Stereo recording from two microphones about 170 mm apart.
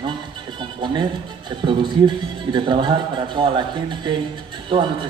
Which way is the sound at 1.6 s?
25° right (ahead or behind).